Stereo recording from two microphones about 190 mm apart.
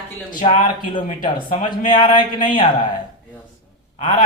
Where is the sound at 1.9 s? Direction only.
25° left (ahead or behind).